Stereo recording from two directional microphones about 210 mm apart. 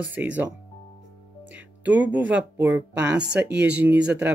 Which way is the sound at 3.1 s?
55° right (ahead or behind).